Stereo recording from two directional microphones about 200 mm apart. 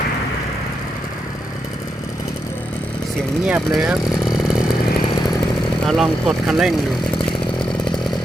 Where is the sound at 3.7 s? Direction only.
Centre (ahead or behind).